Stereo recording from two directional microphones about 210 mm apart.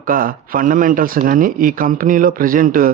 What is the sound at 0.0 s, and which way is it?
Speech, 40° right (ahead or behind).